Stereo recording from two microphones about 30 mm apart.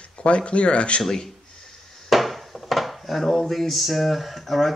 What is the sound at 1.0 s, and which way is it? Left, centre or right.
Speech, centre.